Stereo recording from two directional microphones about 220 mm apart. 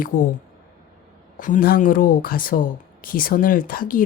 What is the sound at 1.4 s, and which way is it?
Speech, 35° left (ahead or behind).